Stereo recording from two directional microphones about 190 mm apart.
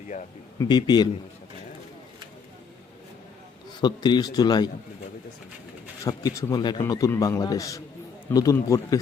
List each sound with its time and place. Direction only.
0.6 s a man's voice: 25° left (ahead or behind)
3.8 s a man's voice: 25° left (ahead or behind)
6.1 s a man's voice: 20° left (ahead or behind)